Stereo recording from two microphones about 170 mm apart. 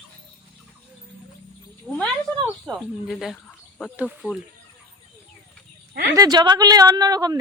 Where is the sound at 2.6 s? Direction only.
Centre (ahead or behind).